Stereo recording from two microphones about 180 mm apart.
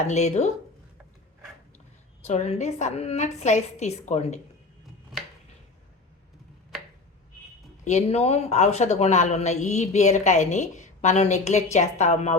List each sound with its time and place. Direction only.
0.0 s speech: 40° left (ahead or behind)
2.2 s speech: 40° left (ahead or behind)
7.9 s speech: 35° left (ahead or behind)